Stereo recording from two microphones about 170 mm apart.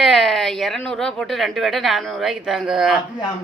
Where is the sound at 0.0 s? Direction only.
Centre (ahead or behind).